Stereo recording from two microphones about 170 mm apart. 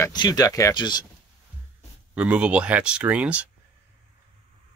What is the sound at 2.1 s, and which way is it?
Speech, 5° right (ahead or behind).